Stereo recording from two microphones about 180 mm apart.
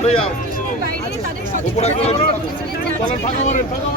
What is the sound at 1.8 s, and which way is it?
Speech, 35° left (ahead or behind).